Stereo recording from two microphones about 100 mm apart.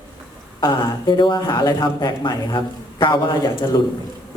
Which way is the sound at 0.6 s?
55° left (ahead or behind).